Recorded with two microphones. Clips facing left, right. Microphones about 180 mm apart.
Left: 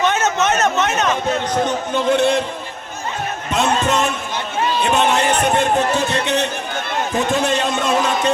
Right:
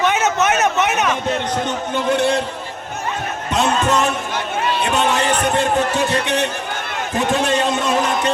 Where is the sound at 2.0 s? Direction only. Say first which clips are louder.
Left 2 dB; 20° left (ahead or behind).